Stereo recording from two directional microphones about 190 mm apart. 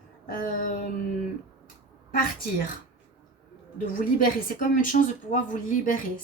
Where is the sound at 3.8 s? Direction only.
45° left (ahead or behind).